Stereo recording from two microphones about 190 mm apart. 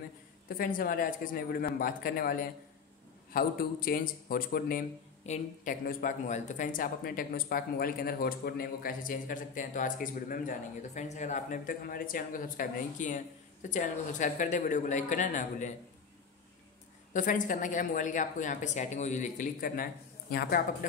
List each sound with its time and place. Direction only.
0.5 s a man's voice: 45° left (ahead or behind)
17.1 s a man's voice: 45° left (ahead or behind)